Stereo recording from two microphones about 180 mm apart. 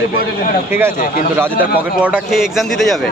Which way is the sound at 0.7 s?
10° right (ahead or behind).